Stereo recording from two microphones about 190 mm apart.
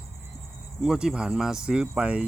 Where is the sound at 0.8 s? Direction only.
5° right (ahead or behind).